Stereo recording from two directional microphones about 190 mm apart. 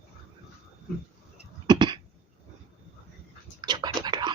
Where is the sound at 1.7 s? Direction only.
25° right (ahead or behind).